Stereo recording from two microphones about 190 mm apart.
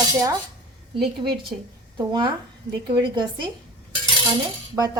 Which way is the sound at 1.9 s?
25° right (ahead or behind).